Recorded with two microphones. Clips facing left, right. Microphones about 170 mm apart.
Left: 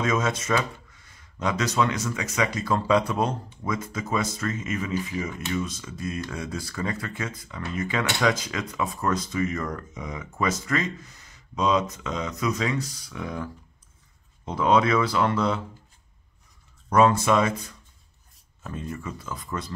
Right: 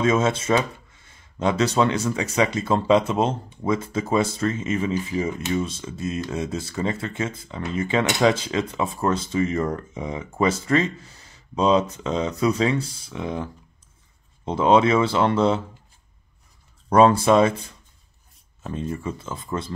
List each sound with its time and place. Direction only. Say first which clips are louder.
0.0 s speech: right 5 dB; 30° right (ahead or behind)
16.9 s speech: right 4 dB; 30° right (ahead or behind)